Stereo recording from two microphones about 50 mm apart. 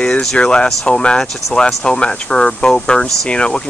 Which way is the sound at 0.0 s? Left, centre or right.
Centre.